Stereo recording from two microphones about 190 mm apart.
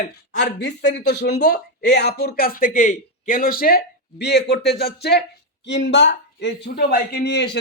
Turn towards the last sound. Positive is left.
turn(degrees=65)  # may be behind; listen again after turning